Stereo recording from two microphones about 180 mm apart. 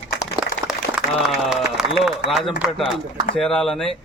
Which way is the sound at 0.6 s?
5° right (ahead or behind).